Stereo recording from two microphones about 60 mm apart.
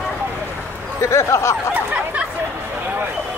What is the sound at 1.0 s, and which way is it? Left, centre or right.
Speech, left.